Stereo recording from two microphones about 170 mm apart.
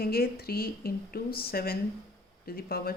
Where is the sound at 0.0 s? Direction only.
65° left (ahead or behind).